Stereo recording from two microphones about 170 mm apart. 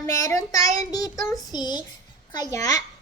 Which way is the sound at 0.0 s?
20° left (ahead or behind).